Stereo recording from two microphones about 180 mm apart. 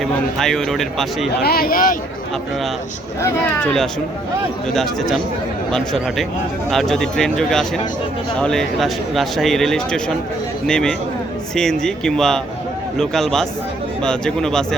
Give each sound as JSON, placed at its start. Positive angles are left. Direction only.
{"t": 0.0, "sound": "speech", "side_deg": 0}
{"t": 1.3, "sound": "speech", "side_deg": 60}
{"t": 3.2, "sound": "speech", "side_deg": 15}